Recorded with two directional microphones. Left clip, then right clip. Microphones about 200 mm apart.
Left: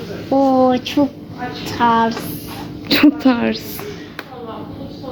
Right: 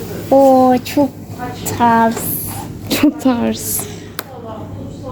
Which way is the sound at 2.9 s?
Centre (ahead or behind).